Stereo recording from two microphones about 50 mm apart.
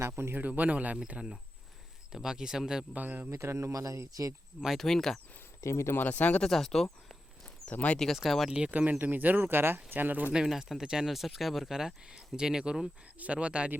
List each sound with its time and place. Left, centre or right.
0.3 s speech: right; by 2.8 s centre
2.9 s speech: right
3.3 s speech: right
4.8 s speech: centre
5.6 s speech: left
6.0 s speech: left
6.4 s speech: centre
7.7 s speech: left
8.1 s speech: centre
8.4 s speech: centre
8.7 s speech: right
10.3 s speech: centre
13.1 s speech: right